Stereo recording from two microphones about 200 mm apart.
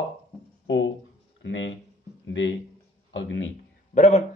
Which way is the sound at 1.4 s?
70° left (ahead or behind).